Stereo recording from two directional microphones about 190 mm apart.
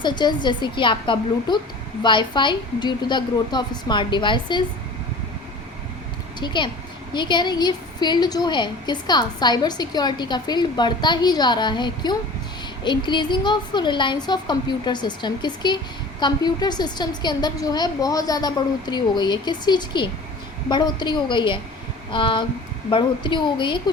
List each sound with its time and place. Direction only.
0.0 s a woman's voice: 25° left (ahead or behind)
6.4 s a woman's voice: 25° left (ahead or behind)